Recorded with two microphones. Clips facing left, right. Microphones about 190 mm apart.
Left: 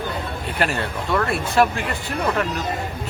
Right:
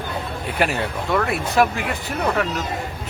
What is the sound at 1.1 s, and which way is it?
Speech, centre (ahead or behind).